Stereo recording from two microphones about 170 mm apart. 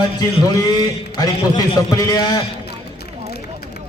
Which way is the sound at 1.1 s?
25° left (ahead or behind).